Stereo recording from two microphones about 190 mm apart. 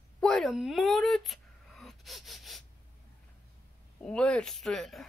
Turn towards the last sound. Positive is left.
turn(degrees=0)  # may be behind; listen again after turning